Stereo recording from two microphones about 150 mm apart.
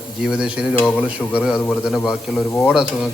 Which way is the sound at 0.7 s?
10° left (ahead or behind).